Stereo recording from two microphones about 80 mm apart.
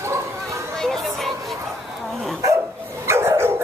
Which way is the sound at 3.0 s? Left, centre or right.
Right.